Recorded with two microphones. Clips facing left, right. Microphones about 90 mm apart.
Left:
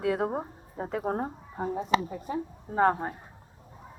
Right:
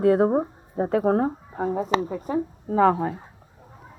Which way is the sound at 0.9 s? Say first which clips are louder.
Right 9 dB; 65° right (ahead or behind).